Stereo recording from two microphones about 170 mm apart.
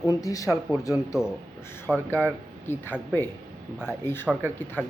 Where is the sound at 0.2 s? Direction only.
20° left (ahead or behind).